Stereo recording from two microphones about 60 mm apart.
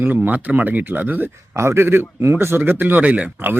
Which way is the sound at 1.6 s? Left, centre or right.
Right.